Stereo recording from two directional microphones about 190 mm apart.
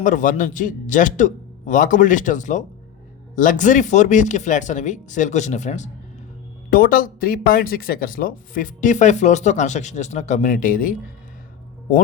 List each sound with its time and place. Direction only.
0.0 s a man's voice: 40° left (ahead or behind)